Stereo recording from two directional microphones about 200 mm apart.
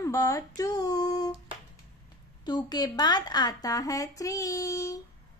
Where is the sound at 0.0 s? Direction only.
15° left (ahead or behind).